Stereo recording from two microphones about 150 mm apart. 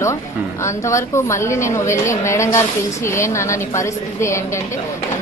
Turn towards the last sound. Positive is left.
turn(degrees=20)  # may be behind; listen again after turning